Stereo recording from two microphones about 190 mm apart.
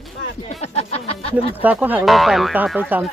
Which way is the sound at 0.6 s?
35° left (ahead or behind).